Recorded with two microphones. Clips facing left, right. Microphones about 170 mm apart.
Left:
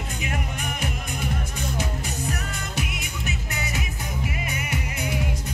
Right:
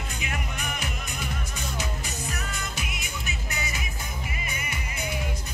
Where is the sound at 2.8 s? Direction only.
65° left (ahead or behind).